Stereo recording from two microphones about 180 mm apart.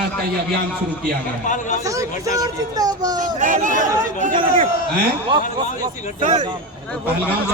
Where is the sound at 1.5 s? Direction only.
45° left (ahead or behind).